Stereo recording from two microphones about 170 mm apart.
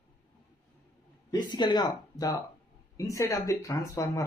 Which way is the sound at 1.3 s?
25° left (ahead or behind).